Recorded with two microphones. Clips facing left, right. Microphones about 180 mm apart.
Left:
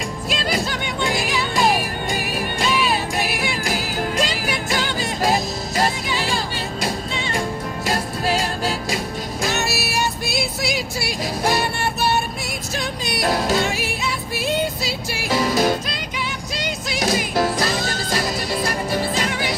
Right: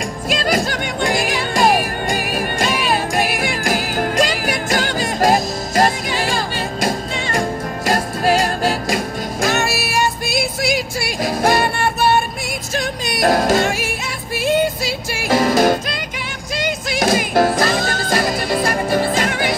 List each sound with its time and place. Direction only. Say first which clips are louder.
0.3 s music: right 5 dB; 45° right (ahead or behind)